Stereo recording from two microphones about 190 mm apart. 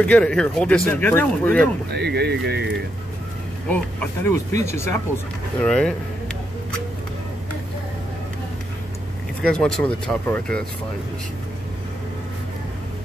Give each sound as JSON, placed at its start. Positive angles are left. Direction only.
{"t": 0.0, "sound": "speech", "side_deg": 5}
{"t": 1.9, "sound": "speech", "side_deg": -60}
{"t": 3.6, "sound": "speech", "side_deg": 10}
{"t": 5.6, "sound": "speech", "side_deg": 5}
{"t": 9.4, "sound": "speech", "side_deg": 5}